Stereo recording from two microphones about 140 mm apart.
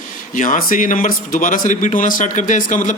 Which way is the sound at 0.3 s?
70° left (ahead or behind).